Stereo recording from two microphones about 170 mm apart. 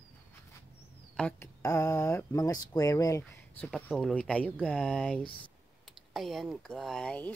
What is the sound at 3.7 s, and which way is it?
Speech, centre (ahead or behind).